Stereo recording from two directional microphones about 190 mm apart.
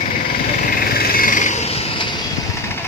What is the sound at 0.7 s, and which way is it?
Frog, 50° left (ahead or behind).